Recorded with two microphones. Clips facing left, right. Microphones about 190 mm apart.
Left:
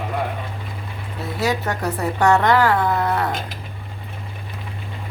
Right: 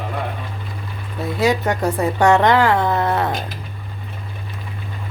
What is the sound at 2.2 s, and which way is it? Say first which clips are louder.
Speech: right 2 dB; 20° right (ahead or behind).